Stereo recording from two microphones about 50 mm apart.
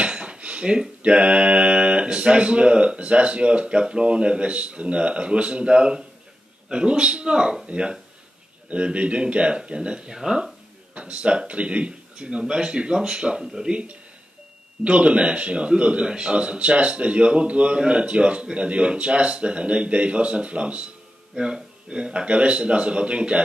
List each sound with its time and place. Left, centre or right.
0.0 s a sound: centre
6.7 s a man's voice: centre
11.0 s a man's voice: right